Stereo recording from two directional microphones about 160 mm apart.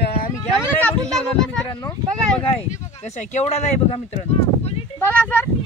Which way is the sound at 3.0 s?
45° left (ahead or behind).